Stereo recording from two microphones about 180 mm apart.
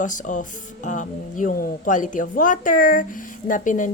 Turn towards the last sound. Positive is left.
turn(degrees=45)  # may be behind; listen again after turning